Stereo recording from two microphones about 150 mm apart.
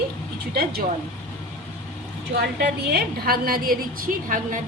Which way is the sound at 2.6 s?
90° right.